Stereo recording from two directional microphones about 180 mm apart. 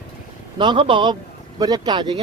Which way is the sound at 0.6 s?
25° right (ahead or behind).